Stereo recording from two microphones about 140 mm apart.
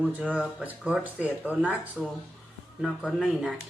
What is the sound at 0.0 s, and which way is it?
A man's voice, 10° right (ahead or behind).